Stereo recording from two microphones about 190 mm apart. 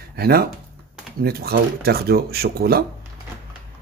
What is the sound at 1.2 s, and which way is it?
Speech, 55° right (ahead or behind).